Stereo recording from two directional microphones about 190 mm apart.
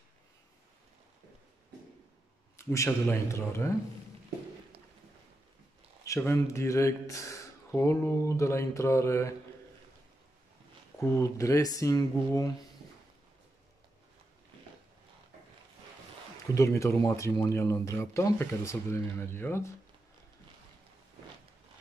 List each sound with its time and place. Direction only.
2.5 s speech: 15° left (ahead or behind)
6.0 s speech: 15° left (ahead or behind)
11.0 s speech: 15° left (ahead or behind)
16.5 s speech: 15° left (ahead or behind)